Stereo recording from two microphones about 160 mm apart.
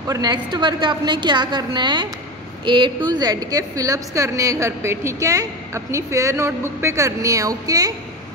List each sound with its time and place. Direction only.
0.1 s a woman's voice: 25° right (ahead or behind)